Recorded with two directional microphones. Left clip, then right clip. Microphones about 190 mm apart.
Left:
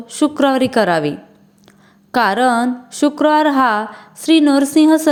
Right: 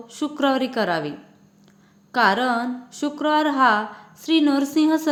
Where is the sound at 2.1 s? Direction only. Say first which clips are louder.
Left 5 dB; 45° left (ahead or behind).